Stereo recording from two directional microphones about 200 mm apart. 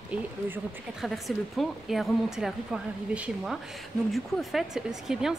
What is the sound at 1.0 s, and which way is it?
A woman's voice, centre (ahead or behind).